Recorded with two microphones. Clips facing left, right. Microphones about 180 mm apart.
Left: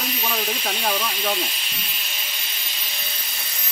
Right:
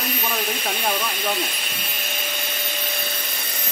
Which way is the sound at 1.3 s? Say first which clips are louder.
Right 1 dB; 55° right (ahead or behind).